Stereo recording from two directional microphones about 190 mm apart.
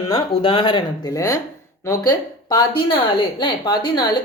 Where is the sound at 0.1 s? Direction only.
25° left (ahead or behind).